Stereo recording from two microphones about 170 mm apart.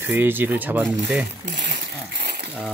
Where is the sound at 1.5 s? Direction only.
60° right (ahead or behind).